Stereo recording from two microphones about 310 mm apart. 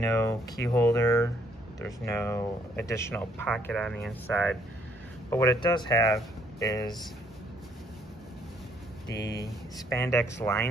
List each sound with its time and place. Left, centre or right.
0.0 s speech: centre
9.1 s speech: left
9.8 s speech: centre